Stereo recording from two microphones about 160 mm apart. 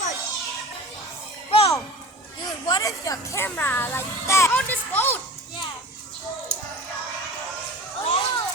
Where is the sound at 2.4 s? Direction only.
25° left (ahead or behind); by 5.2 s 10° left (ahead or behind).